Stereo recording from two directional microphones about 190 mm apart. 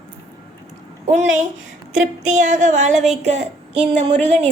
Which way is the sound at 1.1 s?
40° right (ahead or behind).